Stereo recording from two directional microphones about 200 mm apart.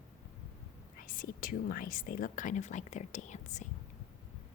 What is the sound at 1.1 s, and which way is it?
A woman's voice, 45° left (ahead or behind).